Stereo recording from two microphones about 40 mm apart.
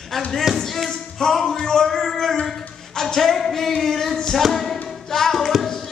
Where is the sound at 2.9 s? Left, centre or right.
Centre.